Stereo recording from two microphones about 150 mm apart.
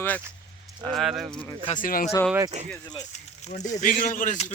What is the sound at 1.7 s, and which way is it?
Speech, 65° left (ahead or behind).